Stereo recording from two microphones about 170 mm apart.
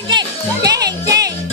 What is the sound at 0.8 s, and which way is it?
Music, 75° right (ahead or behind).